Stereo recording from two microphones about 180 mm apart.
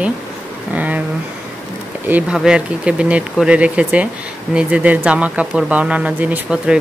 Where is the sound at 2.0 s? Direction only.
5° right (ahead or behind).